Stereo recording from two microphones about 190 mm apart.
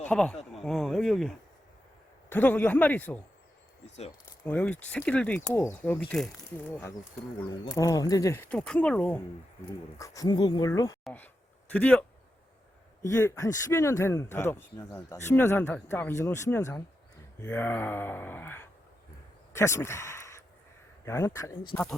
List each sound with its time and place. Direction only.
0.0 s speech: 5° left (ahead or behind)
4.4 s speech: 10° left (ahead or behind)
7.8 s speech: 20° left (ahead or behind)
10.0 s speech: 20° left (ahead or behind)
19.5 s a sound: 15° left (ahead or behind)
21.0 s speech: 15° left (ahead or behind)